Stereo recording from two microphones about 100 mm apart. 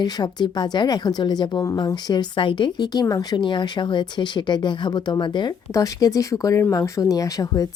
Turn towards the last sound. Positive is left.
turn(degrees=35)  # may be behind; listen again after turning